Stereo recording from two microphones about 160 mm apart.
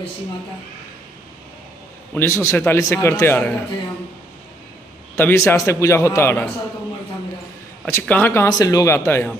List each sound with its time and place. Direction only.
2.1 s speech: 15° left (ahead or behind)
5.1 s speech: 15° left (ahead or behind)
7.8 s speech: 10° left (ahead or behind)